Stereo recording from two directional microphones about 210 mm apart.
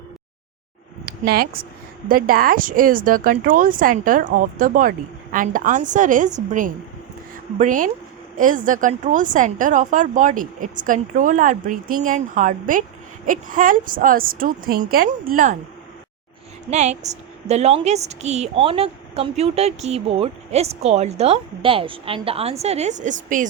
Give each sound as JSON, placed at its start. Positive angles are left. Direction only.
{"t": 1.0, "sound": "a woman's voice", "side_deg": -45}
{"t": 16.6, "sound": "a woman's voice", "side_deg": -35}